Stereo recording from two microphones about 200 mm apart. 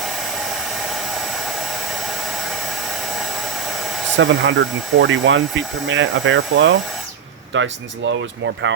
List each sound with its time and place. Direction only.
4.2 s speech: 65° right (ahead or behind)